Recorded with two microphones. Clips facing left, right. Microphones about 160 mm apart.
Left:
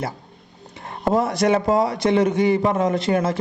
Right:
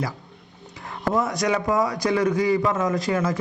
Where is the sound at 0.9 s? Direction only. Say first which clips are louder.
Left 3 dB; 30° left (ahead or behind).